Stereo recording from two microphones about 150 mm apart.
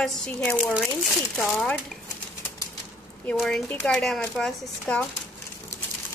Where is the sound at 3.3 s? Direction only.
Centre (ahead or behind).